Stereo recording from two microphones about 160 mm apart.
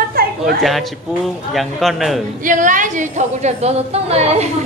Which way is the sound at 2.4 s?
55° right (ahead or behind).